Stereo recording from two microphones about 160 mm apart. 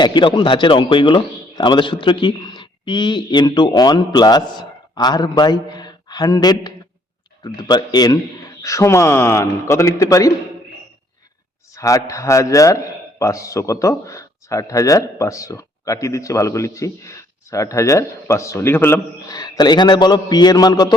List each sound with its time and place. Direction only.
0.0 s a man's voice: 30° left (ahead or behind)
11.7 s a man's voice: 20° left (ahead or behind)
19.3 s a man's voice: 25° left (ahead or behind)